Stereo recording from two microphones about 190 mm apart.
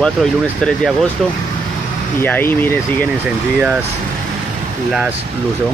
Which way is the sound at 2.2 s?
10° left (ahead or behind).